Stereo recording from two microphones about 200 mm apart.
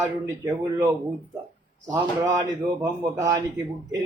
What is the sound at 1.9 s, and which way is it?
A man's voice, 15° right (ahead or behind).